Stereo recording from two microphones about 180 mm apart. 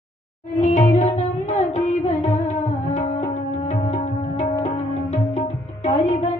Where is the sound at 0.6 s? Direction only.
40° left (ahead or behind).